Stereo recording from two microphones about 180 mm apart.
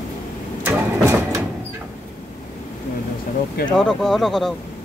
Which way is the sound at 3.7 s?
5° left (ahead or behind).